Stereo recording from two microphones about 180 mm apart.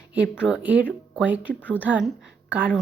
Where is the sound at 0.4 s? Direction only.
5° right (ahead or behind).